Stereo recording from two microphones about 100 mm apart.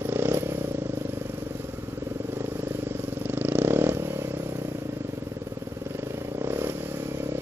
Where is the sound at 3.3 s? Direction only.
20° right (ahead or behind).